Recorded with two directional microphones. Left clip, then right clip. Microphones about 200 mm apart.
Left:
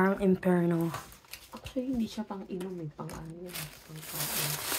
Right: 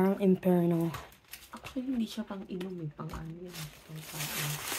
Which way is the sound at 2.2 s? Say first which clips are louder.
Left 2 dB; 20° right (ahead or behind).